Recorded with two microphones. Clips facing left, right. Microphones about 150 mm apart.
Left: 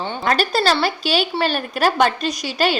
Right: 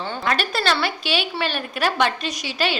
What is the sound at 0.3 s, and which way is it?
A woman's voice, 40° left (ahead or behind).